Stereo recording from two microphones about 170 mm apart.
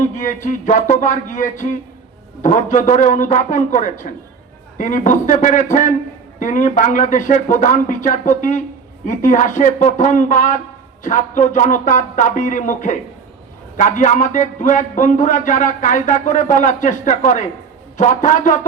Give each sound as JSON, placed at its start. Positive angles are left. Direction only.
{"t": 0.2, "sound": "a man's voice", "side_deg": 50}